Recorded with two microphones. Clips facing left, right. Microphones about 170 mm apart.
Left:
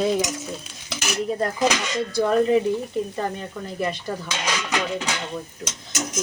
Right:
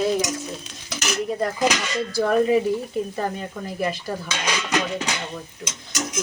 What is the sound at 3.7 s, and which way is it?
Speech, 5° right (ahead or behind).